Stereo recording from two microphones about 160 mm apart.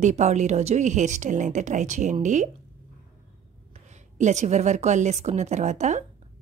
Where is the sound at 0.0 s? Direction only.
45° right (ahead or behind).